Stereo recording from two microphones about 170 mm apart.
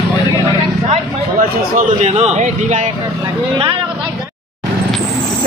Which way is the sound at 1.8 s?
40° right (ahead or behind).